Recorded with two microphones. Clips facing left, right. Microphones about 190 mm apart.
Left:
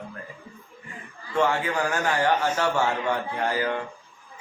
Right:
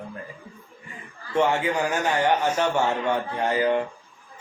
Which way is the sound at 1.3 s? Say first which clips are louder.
Right 2 dB; 20° right (ahead or behind).